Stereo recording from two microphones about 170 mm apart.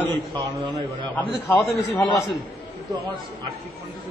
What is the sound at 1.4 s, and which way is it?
Speech, 15° left (ahead or behind).